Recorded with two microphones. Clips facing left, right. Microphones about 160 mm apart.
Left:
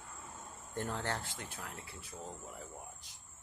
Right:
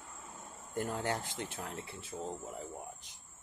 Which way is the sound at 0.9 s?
15° right (ahead or behind).